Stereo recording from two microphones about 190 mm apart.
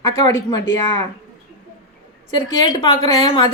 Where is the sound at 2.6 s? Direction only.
25° left (ahead or behind).